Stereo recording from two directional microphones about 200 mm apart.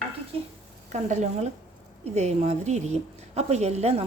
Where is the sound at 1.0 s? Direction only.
35° right (ahead or behind).